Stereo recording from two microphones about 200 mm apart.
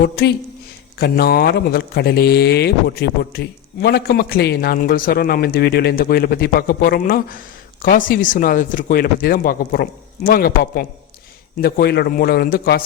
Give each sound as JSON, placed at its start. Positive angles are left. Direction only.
{"t": 0.9, "sound": "speech", "side_deg": 50}